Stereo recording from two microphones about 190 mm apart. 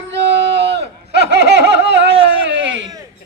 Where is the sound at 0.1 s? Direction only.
65° right (ahead or behind).